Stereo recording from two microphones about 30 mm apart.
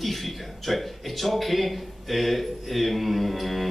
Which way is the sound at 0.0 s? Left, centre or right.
Centre.